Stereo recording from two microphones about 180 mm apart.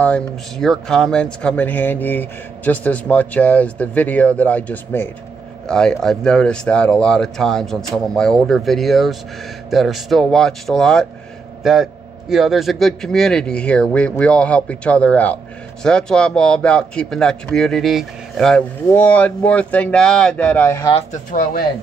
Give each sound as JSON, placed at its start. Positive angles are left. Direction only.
{"t": 0.0, "sound": "speech", "side_deg": 5}
{"t": 21.1, "sound": "speech", "side_deg": 50}